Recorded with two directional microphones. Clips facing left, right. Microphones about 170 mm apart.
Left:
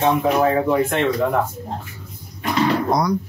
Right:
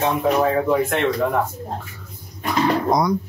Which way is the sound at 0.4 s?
5° left (ahead or behind).